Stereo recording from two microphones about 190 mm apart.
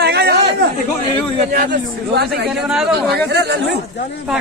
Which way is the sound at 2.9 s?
60° right (ahead or behind).